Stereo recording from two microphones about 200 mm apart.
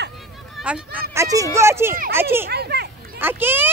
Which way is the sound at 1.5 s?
15° right (ahead or behind).